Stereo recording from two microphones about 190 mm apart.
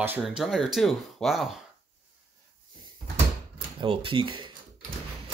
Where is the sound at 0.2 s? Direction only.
Centre (ahead or behind).